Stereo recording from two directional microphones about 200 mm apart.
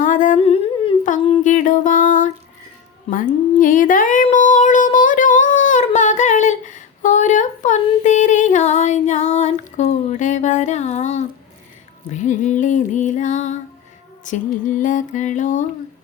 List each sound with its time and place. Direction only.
0.0 s humming: 40° left (ahead or behind)
1.5 s music: 40° left (ahead or behind)
3.1 s a sound: 40° left (ahead or behind)
12.1 s music: 35° left (ahead or behind)